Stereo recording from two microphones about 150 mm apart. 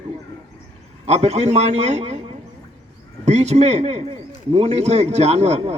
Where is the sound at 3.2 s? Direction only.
50° right (ahead or behind).